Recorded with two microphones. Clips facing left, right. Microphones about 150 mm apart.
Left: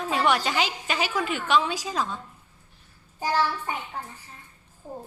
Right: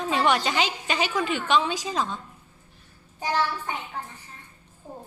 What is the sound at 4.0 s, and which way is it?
Speech, 10° left (ahead or behind).